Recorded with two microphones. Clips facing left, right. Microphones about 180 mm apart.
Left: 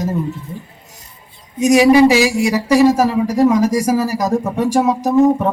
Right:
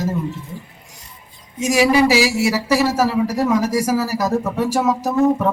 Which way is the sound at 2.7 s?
15° left (ahead or behind).